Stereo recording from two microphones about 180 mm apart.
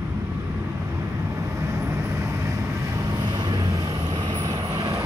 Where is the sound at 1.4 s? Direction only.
15° right (ahead or behind).